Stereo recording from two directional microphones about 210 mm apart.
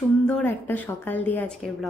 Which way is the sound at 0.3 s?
10° left (ahead or behind).